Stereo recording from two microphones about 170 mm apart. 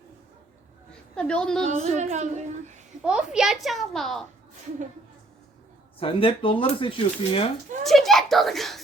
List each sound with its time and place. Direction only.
1.1 s a child's voice: 5° left (ahead or behind)
1.6 s speech: 40° right (ahead or behind)
3.0 s a child's voice: 5° right (ahead or behind)
6.0 s speech: 30° left (ahead or behind)
7.9 s a child's voice: centre (ahead or behind)